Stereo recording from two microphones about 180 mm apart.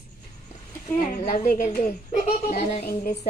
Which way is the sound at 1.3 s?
45° left (ahead or behind).